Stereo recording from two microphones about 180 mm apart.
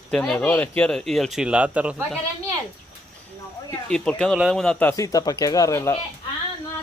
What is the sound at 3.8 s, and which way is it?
Speech, 5° left (ahead or behind).